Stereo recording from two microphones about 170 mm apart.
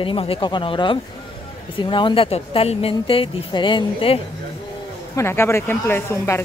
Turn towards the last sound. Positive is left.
turn(degrees=15)  # may be behind; listen again after turning